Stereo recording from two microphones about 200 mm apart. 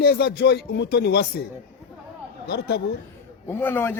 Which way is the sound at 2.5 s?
55° left (ahead or behind).